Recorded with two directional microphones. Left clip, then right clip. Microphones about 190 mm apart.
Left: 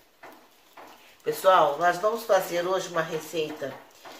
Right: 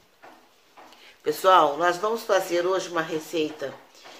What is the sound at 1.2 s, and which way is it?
Speech, 50° right (ahead or behind).